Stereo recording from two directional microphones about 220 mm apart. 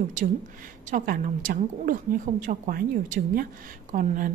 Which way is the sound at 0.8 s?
40° right (ahead or behind).